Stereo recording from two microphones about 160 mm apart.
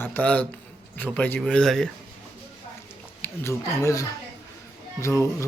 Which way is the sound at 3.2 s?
15° left (ahead or behind).